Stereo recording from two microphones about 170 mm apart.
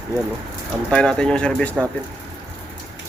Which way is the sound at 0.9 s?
5° left (ahead or behind).